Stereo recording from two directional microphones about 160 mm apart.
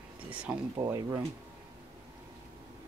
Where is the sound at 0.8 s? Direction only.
20° right (ahead or behind).